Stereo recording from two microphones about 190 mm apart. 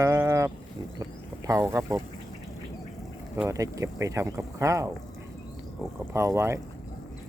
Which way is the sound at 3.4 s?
15° right (ahead or behind).